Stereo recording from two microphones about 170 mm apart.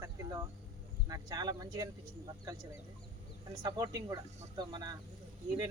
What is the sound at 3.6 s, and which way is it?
Speech, 20° right (ahead or behind).